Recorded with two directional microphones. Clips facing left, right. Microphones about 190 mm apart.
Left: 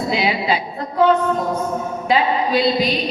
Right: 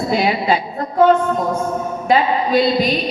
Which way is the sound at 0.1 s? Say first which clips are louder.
Right 3 dB; 50° right (ahead or behind).